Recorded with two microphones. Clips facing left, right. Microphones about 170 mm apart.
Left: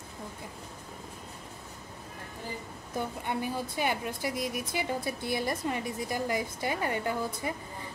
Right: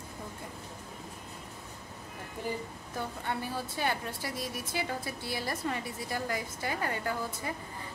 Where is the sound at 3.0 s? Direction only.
15° left (ahead or behind).